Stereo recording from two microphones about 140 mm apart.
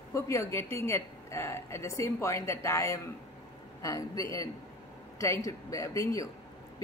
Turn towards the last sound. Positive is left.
turn(degrees=25)  # may be behind; listen again after turning